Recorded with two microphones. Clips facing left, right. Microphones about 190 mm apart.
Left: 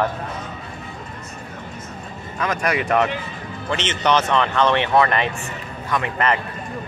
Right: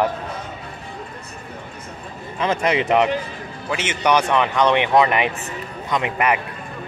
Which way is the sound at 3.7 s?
10° right (ahead or behind).